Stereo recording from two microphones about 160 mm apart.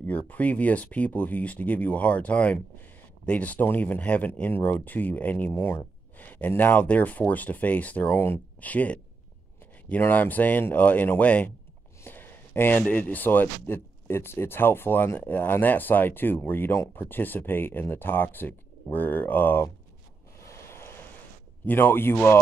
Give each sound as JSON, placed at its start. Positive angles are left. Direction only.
{"t": 0.0, "sound": "speech", "side_deg": 10}
{"t": 20.4, "sound": "a sound", "side_deg": 15}
{"t": 21.6, "sound": "speech", "side_deg": 15}